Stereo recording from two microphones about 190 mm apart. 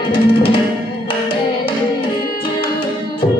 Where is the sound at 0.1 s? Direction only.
25° left (ahead or behind).